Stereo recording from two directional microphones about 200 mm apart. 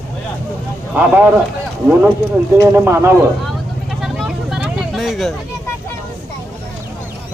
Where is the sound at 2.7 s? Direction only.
15° right (ahead or behind).